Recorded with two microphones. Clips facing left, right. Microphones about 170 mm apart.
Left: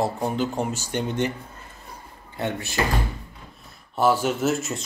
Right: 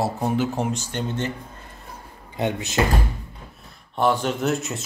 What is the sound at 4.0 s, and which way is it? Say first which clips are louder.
Speech: left 1 dB; 5° left (ahead or behind).